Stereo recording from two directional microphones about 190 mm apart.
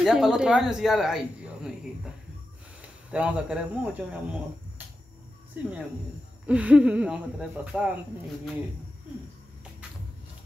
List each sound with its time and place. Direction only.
0.0 s speech: 5° right (ahead or behind)
2.8 s speech: 5° right (ahead or behind)
5.5 s speech: 5° right (ahead or behind)